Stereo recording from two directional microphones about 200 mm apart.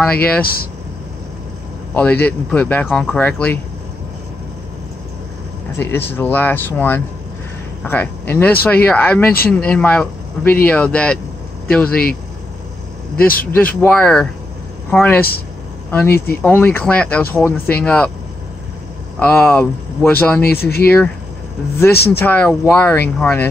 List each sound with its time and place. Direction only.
0.0 s speech: 5° left (ahead or behind)
0.4 s speech: 50° left (ahead or behind)
2.0 s speech: 10° left (ahead or behind)
5.8 s speech: 10° left (ahead or behind)
11.9 s speech: 45° left (ahead or behind)
13.5 s speech: 10° left (ahead or behind)
19.1 s speech: 5° left (ahead or behind)
20.5 s speech: 50° left (ahead or behind)
21.9 s speech: 55° left (ahead or behind)
22.2 s speech: 10° left (ahead or behind)